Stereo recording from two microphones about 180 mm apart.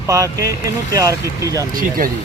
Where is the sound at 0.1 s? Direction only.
20° right (ahead or behind).